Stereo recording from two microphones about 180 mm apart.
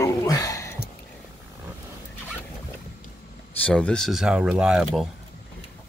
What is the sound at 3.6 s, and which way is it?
Speech, 5° left (ahead or behind).